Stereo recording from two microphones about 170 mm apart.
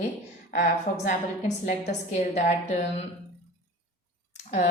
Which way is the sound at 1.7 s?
45° left (ahead or behind).